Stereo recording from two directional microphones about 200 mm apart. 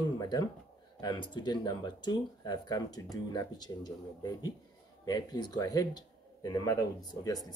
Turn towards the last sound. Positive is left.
turn(degrees=20)  # may be behind; listen again after turning